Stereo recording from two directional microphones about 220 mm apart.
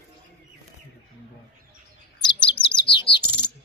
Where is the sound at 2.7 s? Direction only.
20° left (ahead or behind).